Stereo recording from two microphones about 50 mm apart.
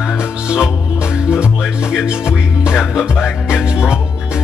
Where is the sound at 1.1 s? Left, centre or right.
Centre.